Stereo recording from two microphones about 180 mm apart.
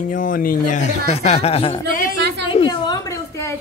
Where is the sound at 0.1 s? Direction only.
50° left (ahead or behind).